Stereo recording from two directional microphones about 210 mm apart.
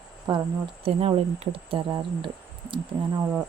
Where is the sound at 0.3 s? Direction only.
20° right (ahead or behind).